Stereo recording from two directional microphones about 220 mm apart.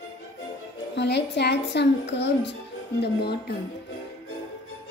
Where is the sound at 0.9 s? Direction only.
50° left (ahead or behind).